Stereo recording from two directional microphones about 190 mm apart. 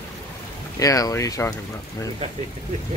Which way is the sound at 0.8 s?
20° left (ahead or behind).